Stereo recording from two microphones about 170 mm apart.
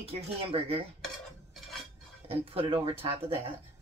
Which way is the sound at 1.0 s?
Centre (ahead or behind).